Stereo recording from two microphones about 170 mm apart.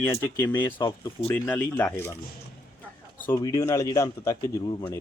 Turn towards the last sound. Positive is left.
turn(degrees=20)  # may be behind; listen again after turning